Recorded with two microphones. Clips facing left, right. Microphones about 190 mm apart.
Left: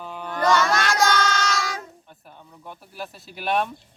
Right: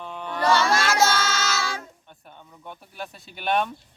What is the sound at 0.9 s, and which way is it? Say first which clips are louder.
Music: left 1 dB; 5° right (ahead or behind).